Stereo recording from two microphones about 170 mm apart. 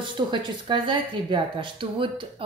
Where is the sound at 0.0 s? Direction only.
30° right (ahead or behind).